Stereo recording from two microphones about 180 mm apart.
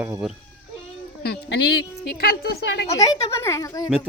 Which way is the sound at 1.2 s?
70° left (ahead or behind).